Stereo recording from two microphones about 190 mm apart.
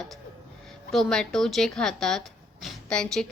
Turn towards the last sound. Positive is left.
turn(degrees=5)  # may be behind; listen again after turning